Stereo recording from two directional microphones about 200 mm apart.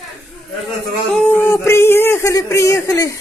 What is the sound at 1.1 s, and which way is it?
Speech, 10° left (ahead or behind).